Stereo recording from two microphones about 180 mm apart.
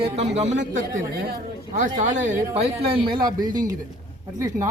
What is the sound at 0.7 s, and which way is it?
A man's voice, 50° right (ahead or behind).